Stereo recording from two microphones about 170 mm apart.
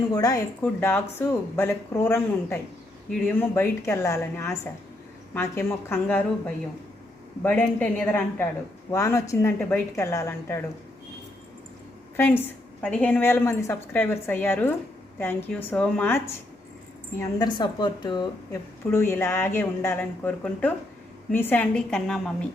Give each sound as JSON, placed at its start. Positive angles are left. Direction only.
{"t": 0.1, "sound": "speech", "side_deg": 20}
{"t": 7.4, "sound": "speech", "side_deg": 10}
{"t": 12.1, "sound": "a woman's voice", "side_deg": 15}
{"t": 18.9, "sound": "a woman's voice", "side_deg": 15}